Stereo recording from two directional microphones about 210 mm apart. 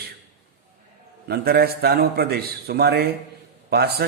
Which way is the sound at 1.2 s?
50° right (ahead or behind).